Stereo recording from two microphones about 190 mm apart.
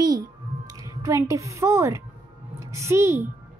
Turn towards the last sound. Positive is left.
turn(degrees=-15)  # may be behind; listen again after turning